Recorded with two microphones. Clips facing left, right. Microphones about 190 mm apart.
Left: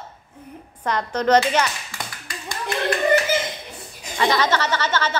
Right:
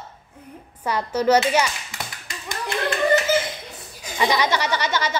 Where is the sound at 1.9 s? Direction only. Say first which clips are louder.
Even; 20° right (ahead or behind).